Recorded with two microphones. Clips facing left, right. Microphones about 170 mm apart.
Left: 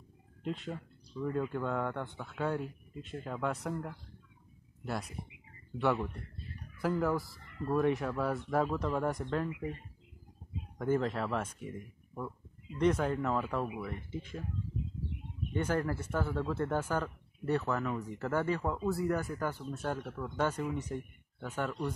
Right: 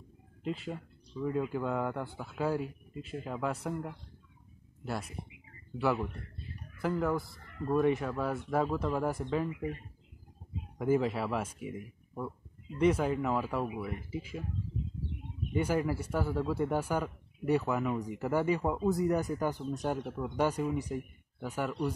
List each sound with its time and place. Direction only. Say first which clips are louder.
0.4 s speech: right 1 dB; 5° right (ahead or behind)
5.7 s speech: even; centre (ahead or behind)
10.8 s a man's voice: right 2 dB; 5° right (ahead or behind)
15.5 s a man's voice: right 2 dB; 10° right (ahead or behind)